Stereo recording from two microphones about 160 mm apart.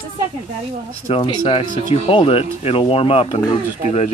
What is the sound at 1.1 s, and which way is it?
Speech, 35° left (ahead or behind).